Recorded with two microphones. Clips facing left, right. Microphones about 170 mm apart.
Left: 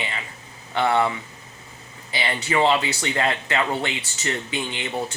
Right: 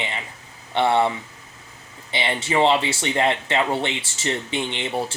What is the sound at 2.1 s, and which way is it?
Speech, 25° right (ahead or behind).